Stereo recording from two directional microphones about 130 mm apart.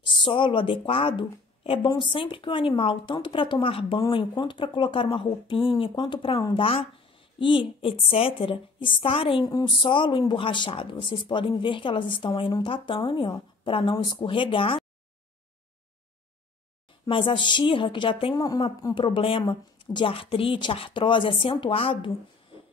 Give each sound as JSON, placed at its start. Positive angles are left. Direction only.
{"t": 0.0, "sound": "a woman's voice", "side_deg": 40}
{"t": 17.0, "sound": "a woman's voice", "side_deg": 40}
{"t": 18.9, "sound": "a woman's voice", "side_deg": 40}